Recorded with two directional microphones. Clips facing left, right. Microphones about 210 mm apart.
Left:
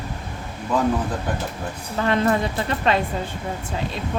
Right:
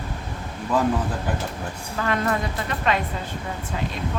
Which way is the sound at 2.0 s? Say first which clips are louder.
Left 4 dB; 25° left (ahead or behind).